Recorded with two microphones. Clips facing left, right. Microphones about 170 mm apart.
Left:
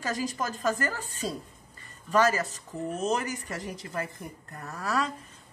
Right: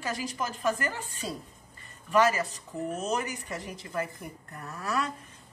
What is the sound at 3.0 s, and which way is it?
Speech, 40° left (ahead or behind).